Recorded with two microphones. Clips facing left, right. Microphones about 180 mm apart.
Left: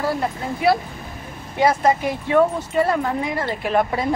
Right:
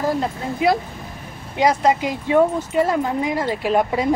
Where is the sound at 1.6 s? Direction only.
15° right (ahead or behind).